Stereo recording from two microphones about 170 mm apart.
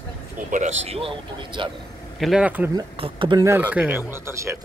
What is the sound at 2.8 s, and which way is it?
Speech, 30° right (ahead or behind).